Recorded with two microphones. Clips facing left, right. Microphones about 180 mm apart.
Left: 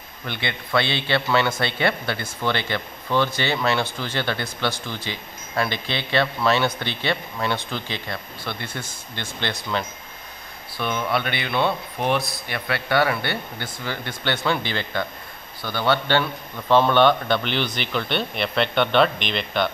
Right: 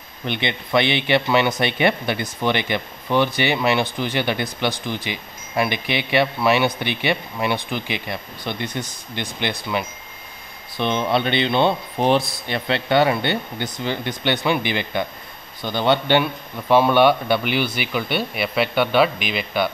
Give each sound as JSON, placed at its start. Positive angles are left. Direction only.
{"t": 0.2, "sound": "speech", "side_deg": -20}
{"t": 10.8, "sound": "speech", "side_deg": -25}